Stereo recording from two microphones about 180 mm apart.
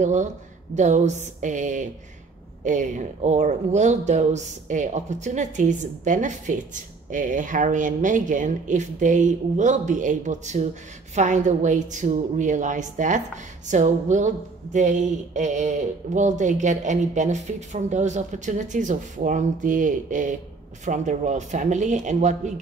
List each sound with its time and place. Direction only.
0.0 s a woman's voice: 40° right (ahead or behind)